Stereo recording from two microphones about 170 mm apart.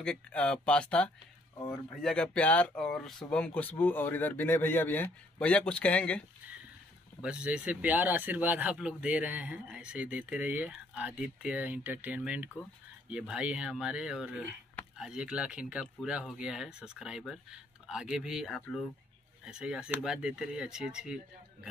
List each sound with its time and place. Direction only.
0.0 s speech: 5° left (ahead or behind)
7.2 s speech: 5° right (ahead or behind)